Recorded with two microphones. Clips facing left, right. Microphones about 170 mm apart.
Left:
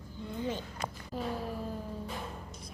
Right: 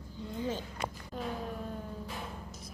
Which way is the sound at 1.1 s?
Centre (ahead or behind).